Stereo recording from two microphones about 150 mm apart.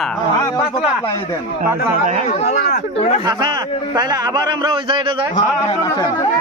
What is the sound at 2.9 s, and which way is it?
Speech, 45° left (ahead or behind).